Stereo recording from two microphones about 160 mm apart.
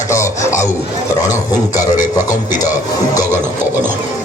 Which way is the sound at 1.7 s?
50° left (ahead or behind).